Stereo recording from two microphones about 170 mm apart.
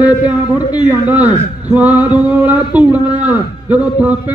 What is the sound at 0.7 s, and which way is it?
Speech, 10° right (ahead or behind).